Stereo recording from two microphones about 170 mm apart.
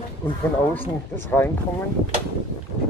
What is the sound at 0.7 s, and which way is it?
Speech, 10° left (ahead or behind).